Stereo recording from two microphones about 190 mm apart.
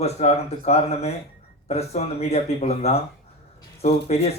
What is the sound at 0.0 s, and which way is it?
Speech, 35° left (ahead or behind).